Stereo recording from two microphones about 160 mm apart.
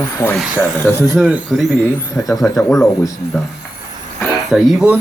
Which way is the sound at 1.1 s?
10° right (ahead or behind).